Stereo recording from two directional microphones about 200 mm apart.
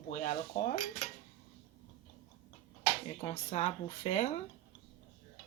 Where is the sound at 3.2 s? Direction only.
30° left (ahead or behind).